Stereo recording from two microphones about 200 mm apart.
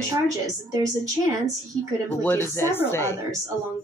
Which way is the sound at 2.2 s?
10° left (ahead or behind).